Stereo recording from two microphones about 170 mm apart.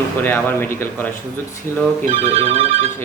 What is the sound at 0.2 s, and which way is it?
Speech, 10° left (ahead or behind).